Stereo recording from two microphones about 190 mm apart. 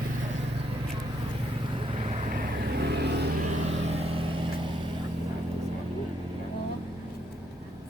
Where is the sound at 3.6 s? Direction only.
35° right (ahead or behind).